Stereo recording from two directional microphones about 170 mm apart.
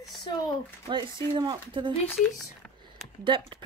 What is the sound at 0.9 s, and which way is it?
A woman's voice, 25° right (ahead or behind).